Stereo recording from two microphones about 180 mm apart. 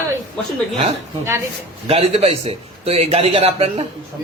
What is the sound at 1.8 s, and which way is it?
A man's voice, 35° right (ahead or behind).